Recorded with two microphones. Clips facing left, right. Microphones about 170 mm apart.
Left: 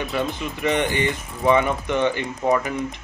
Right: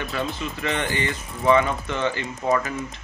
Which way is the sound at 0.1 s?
15° left (ahead or behind).